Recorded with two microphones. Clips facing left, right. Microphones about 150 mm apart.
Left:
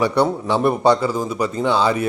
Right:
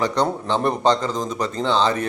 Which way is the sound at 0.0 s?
10° left (ahead or behind).